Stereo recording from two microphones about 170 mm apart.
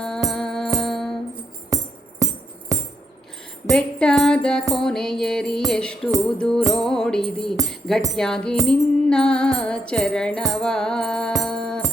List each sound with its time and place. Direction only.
0.0 s music: 5° left (ahead or behind)
1.7 s music: 20° right (ahead or behind)
3.7 s music: 5° left (ahead or behind)